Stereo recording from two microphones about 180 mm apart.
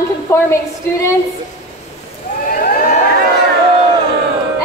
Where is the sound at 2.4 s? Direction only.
50° left (ahead or behind).